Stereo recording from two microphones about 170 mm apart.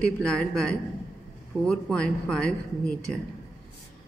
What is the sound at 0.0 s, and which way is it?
Speech, 5° left (ahead or behind).